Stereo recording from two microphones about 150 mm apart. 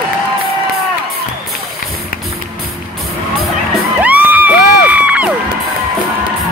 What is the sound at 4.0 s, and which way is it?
Music, 10° right (ahead or behind).